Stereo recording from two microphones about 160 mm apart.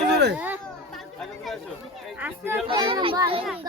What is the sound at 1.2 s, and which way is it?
Speech, centre (ahead or behind).